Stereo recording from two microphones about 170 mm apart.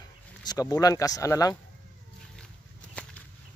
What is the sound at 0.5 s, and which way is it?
Speech, 20° left (ahead or behind).